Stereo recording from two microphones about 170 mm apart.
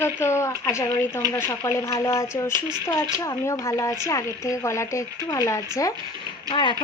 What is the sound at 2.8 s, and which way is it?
Speech, 15° left (ahead or behind).